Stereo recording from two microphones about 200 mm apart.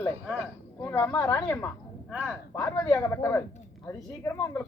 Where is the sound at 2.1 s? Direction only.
5° right (ahead or behind).